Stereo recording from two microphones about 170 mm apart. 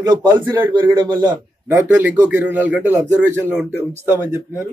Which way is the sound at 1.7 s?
10° right (ahead or behind).